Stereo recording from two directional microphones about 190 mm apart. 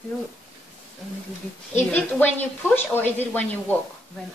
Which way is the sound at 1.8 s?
10° left (ahead or behind).